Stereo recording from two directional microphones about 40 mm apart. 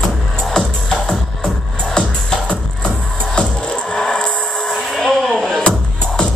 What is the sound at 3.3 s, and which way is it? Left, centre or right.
Music, left.